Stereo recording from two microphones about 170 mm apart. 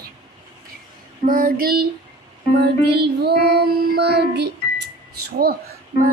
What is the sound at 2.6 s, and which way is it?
Music, 75° right (ahead or behind).